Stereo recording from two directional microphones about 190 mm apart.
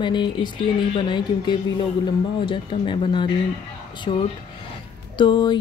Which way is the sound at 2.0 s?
25° left (ahead or behind).